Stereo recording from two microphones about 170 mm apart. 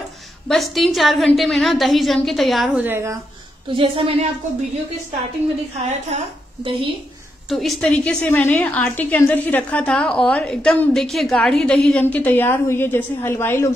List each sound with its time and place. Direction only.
0.5 s a woman's voice: centre (ahead or behind); by 3.2 s 15° right (ahead or behind)
3.7 s a woman's voice: 35° right (ahead or behind)
5.8 s a woman's voice: 40° right (ahead or behind)
7.4 s a woman's voice: centre (ahead or behind)